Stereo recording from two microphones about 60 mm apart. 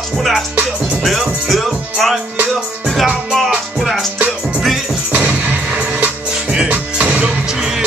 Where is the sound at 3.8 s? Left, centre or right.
Centre.